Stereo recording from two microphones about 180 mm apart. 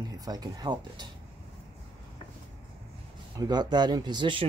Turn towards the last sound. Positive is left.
turn(degrees=-25)  # may be behind; listen again after turning